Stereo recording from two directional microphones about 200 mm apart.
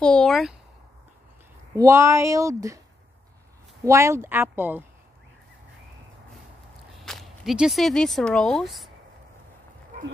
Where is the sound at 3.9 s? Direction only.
15° right (ahead or behind).